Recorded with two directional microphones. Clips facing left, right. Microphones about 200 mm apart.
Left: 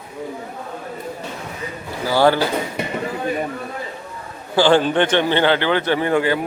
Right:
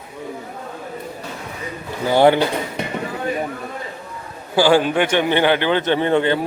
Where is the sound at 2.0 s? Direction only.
20° right (ahead or behind).